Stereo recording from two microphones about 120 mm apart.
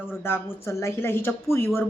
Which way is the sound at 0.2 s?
20° left (ahead or behind).